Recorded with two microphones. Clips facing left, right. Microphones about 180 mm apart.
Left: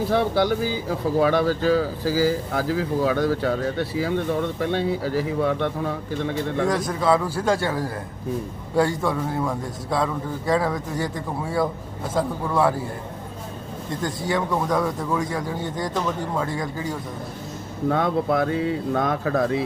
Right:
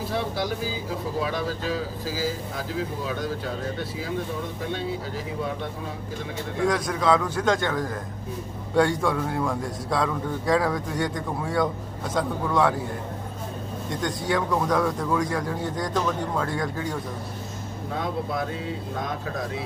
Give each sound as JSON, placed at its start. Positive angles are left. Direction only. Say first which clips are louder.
{"t": 0.1, "sound": "speech", "louder": "left 7 dB", "side_deg": 65}
{"t": 6.7, "sound": "a man's voice", "louder": "even", "side_deg": 0}
{"t": 14.0, "sound": "a man's voice", "louder": "left 1 dB", "side_deg": 0}
{"t": 17.8, "sound": "speech", "louder": "left 8 dB", "side_deg": 65}